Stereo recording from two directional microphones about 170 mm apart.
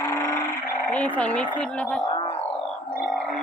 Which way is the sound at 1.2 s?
5° left (ahead or behind).